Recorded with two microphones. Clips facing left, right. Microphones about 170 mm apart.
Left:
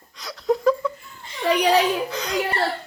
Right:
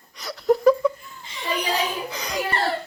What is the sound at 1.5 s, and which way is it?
Speech, 75° left (ahead or behind).